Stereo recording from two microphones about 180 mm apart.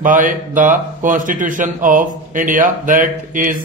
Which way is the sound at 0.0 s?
50° right (ahead or behind).